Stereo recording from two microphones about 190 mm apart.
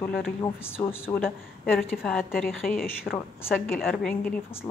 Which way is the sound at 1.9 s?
Centre (ahead or behind).